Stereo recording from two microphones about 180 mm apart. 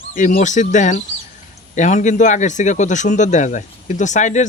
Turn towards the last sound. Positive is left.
turn(degrees=40)  # may be behind; listen again after turning